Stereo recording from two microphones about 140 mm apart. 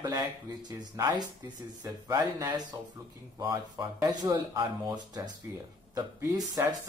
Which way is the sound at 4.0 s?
25° right (ahead or behind).